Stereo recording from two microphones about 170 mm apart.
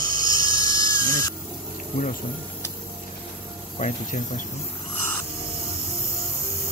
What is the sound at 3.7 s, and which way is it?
Speech, 45° left (ahead or behind).